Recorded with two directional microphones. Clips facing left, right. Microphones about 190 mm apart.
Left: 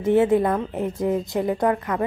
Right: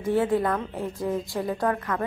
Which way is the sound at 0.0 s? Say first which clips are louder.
Left 5 dB; 20° left (ahead or behind).